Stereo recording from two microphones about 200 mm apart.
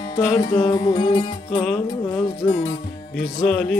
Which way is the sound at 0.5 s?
25° left (ahead or behind).